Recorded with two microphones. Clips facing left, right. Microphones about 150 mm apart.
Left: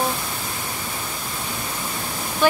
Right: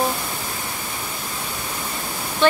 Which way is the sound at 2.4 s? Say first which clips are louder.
Right 1 dB; 10° left (ahead or behind).